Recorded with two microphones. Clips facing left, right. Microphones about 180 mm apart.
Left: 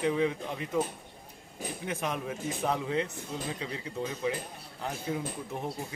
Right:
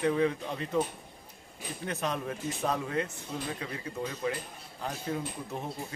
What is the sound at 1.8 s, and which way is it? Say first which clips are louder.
Speech: right 1 dB; 15° left (ahead or behind).